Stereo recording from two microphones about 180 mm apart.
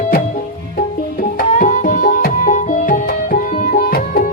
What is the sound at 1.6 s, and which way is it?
Music, 45° left (ahead or behind).